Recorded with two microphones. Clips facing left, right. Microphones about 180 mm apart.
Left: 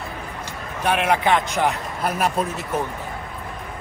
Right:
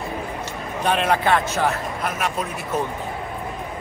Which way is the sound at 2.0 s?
35° left (ahead or behind).